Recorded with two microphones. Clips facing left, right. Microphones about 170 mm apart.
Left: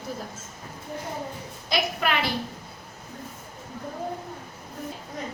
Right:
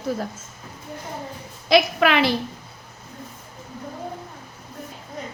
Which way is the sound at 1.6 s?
85° right.